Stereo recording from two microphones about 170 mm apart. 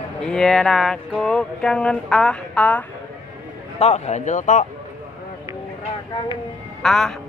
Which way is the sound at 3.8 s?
40° left (ahead or behind).